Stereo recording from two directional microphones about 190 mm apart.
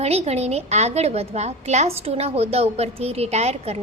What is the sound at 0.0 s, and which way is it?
A woman's voice, 35° right (ahead or behind).